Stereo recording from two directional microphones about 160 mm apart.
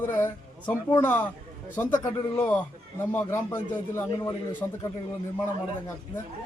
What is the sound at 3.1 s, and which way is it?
A man's voice, 10° left (ahead or behind).